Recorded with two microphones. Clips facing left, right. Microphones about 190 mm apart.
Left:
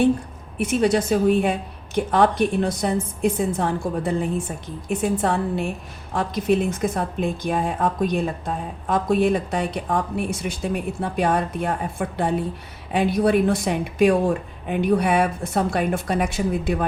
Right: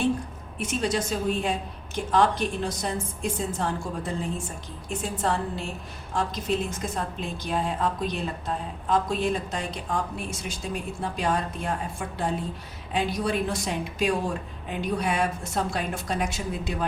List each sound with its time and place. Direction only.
0.6 s a woman's voice: 60° left (ahead or behind)